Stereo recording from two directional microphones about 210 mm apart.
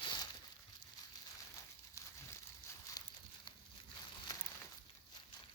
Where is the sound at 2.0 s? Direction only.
15° left (ahead or behind).